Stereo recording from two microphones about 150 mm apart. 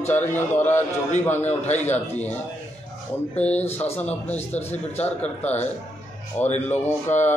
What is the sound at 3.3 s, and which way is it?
Speech, 45° left (ahead or behind).